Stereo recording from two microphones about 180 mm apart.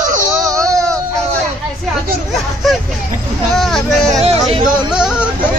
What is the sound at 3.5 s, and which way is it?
Yodeling, centre (ahead or behind).